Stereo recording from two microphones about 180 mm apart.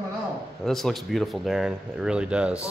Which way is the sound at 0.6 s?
Centre (ahead or behind).